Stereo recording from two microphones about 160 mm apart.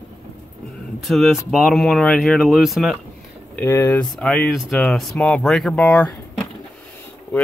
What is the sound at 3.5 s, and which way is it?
Speech, 15° left (ahead or behind).